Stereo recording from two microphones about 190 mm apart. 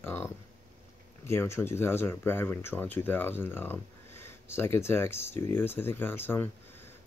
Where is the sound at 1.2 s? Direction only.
15° left (ahead or behind).